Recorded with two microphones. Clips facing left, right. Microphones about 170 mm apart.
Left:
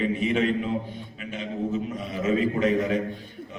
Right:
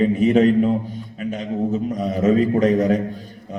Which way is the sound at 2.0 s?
40° right (ahead or behind).